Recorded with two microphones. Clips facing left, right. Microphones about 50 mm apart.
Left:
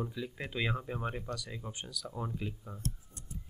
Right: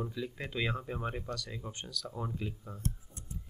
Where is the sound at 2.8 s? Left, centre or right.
Right.